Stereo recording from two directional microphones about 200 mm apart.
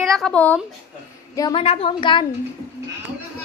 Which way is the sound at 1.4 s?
20° left (ahead or behind).